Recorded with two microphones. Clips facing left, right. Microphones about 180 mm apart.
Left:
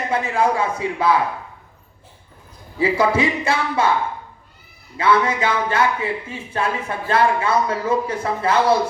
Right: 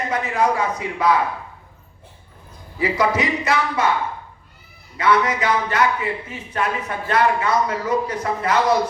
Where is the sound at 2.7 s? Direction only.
30° left (ahead or behind).